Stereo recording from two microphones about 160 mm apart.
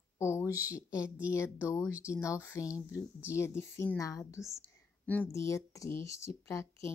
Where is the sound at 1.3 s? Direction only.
15° left (ahead or behind).